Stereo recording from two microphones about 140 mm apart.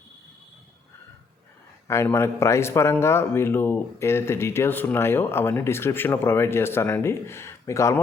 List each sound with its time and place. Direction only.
1.9 s speech: 20° left (ahead or behind)